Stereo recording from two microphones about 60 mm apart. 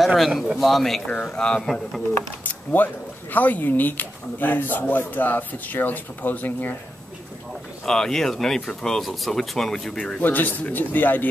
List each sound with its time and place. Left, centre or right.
0.0 s a man's voice: centre
1.0 s speech: centre
2.4 s speech: left
7.8 s speech: centre
10.2 s speech: left